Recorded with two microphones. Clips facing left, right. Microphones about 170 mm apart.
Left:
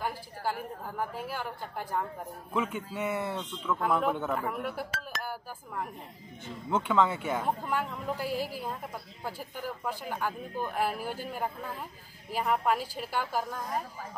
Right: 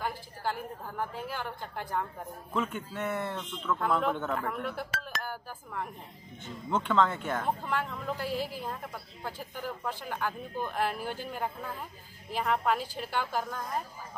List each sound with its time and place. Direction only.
0.0 s speech: 10° left (ahead or behind)